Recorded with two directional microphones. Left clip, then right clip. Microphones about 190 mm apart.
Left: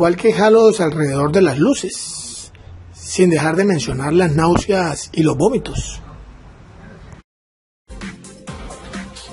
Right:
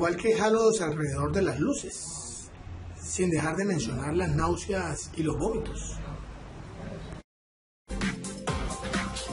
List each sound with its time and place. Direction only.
0.0 s speech: 40° left (ahead or behind)
3.2 s speech: 45° left (ahead or behind)
7.9 s music: centre (ahead or behind)